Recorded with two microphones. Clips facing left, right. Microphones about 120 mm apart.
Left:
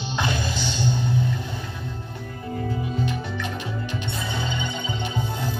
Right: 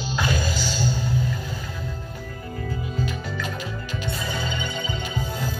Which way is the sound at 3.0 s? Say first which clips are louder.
Left 1 dB; 25° left (ahead or behind).